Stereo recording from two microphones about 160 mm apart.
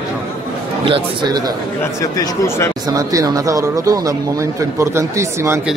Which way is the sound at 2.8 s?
20° right (ahead or behind).